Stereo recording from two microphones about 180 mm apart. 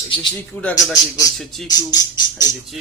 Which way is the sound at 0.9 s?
20° left (ahead or behind).